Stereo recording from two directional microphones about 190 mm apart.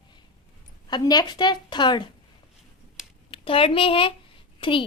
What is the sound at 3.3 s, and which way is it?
A woman's voice, 30° left (ahead or behind).